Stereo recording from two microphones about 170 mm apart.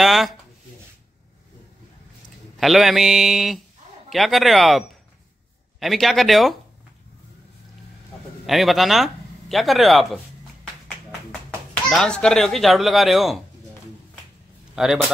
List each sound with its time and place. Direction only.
0.0 s speech: centre (ahead or behind)
2.6 s speech: centre (ahead or behind)
8.5 s speech: centre (ahead or behind)
11.7 s speech: 5° left (ahead or behind)
14.8 s speech: 5° right (ahead or behind)